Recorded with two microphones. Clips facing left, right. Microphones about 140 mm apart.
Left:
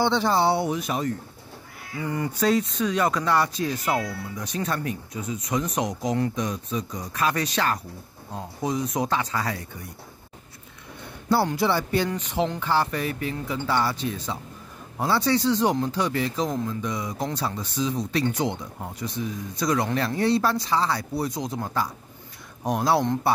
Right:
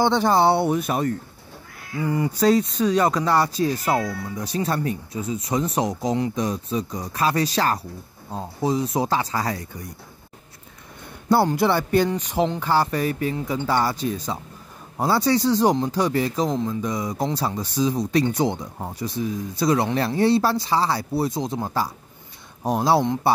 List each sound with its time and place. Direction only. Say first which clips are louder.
0.0 s speech: right 3 dB; 50° right (ahead or behind)
2.0 s speech: right 5 dB; 20° right (ahead or behind)
2.4 s speech: right 4 dB; 35° right (ahead or behind)
11.5 s speech: right 4 dB; 50° right (ahead or behind)
12.2 s speech: right 3 dB; 40° right (ahead or behind)